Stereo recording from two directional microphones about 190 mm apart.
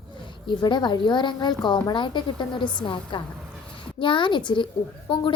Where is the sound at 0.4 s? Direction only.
25° left (ahead or behind).